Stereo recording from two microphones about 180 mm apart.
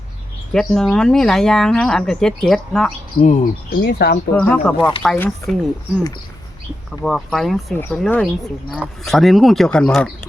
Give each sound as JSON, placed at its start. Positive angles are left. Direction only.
{"t": 0.5, "sound": "speech", "side_deg": 5}
{"t": 3.2, "sound": "speech", "side_deg": 45}
{"t": 3.8, "sound": "speech", "side_deg": 60}
{"t": 4.4, "sound": "speech", "side_deg": 5}
{"t": 7.0, "sound": "speech", "side_deg": 0}